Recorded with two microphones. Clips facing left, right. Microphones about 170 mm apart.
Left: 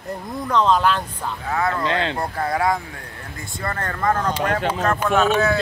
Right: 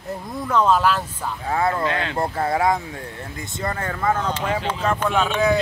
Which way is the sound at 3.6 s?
10° right (ahead or behind).